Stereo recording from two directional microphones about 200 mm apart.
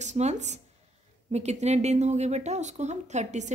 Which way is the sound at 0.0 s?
35° right (ahead or behind).